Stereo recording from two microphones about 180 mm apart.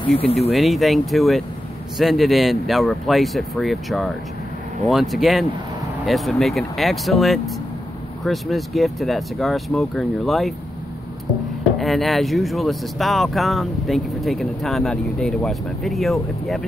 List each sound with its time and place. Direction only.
0.0 s speech: 35° left (ahead or behind)
0.5 s speech: centre (ahead or behind)
11.8 s speech: centre (ahead or behind)